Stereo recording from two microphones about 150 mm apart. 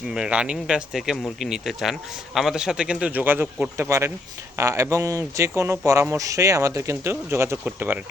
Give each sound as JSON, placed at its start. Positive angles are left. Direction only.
{"t": 0.1, "sound": "speech", "side_deg": -5}